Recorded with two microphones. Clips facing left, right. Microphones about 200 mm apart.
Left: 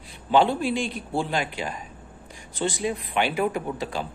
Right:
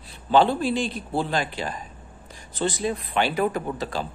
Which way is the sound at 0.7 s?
35° right (ahead or behind).